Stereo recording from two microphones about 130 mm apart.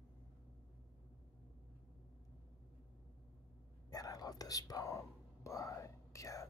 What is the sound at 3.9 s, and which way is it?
Whispering, 30° left (ahead or behind).